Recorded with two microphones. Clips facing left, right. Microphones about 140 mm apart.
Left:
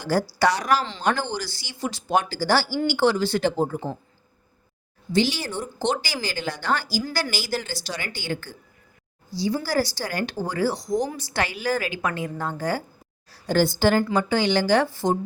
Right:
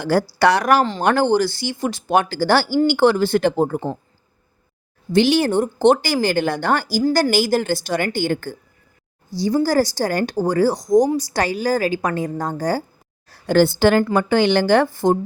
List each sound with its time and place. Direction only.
0.0 s speech: 65° right (ahead or behind)
5.1 s a woman's voice: 60° right (ahead or behind); by 12.8 s 40° right (ahead or behind)
13.3 s speech: 65° right (ahead or behind)